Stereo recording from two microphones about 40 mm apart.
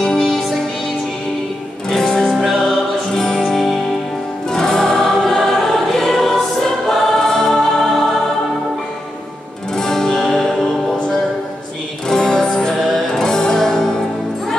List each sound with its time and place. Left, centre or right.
0.0 s music: centre
1.9 s music: centre
3.4 s music: centre
4.5 s music: centre
9.8 s music: centre
12.1 s music: centre